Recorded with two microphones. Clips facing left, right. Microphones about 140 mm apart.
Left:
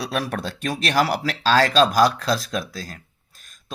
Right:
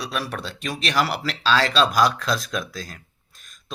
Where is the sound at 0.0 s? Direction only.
50° left (ahead or behind).